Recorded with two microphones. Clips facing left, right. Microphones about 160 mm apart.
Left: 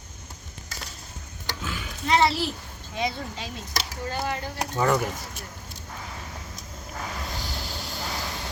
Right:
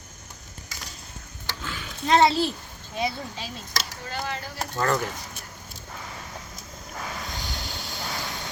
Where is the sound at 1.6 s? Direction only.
5° left (ahead or behind).